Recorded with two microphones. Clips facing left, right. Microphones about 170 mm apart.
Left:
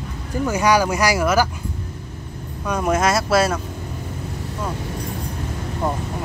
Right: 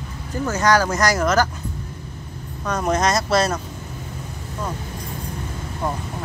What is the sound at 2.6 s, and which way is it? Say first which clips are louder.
Speech: left 1 dB; 10° left (ahead or behind).